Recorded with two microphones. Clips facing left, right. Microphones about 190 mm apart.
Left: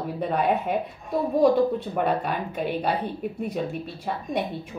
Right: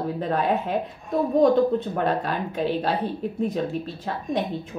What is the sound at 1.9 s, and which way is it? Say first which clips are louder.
A woman's voice: even; 10° left (ahead or behind).